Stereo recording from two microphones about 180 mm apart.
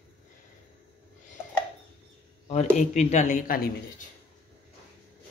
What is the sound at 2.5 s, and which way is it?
Speech, 40° left (ahead or behind).